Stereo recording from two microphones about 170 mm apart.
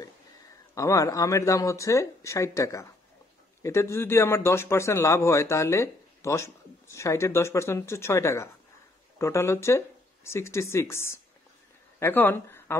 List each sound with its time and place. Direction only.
0.7 s a man's voice: 20° left (ahead or behind)